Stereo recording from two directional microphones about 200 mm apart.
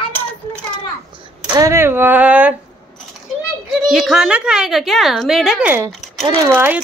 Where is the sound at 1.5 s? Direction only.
15° right (ahead or behind).